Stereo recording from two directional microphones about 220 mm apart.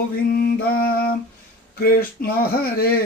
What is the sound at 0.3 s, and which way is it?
Mantra, 45° left (ahead or behind).